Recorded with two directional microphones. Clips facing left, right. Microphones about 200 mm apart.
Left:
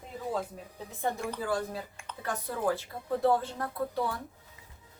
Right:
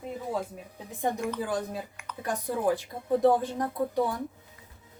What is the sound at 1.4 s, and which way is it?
Speech, 15° right (ahead or behind).